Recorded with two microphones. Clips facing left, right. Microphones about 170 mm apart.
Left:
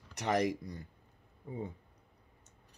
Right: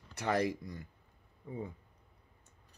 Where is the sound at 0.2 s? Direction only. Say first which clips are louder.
Left 1 dB; 20° left (ahead or behind).